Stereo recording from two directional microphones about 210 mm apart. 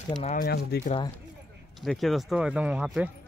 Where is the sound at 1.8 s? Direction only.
Centre (ahead or behind).